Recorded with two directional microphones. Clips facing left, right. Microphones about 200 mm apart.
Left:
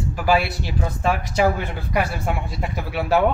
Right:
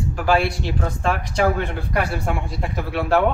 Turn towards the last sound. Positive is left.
turn(degrees=5)  # may be behind; listen again after turning